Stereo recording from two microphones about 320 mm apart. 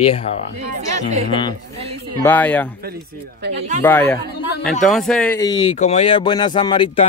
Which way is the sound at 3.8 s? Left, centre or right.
Centre.